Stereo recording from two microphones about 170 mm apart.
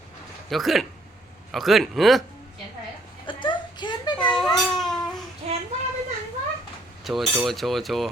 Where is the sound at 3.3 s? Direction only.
30° left (ahead or behind).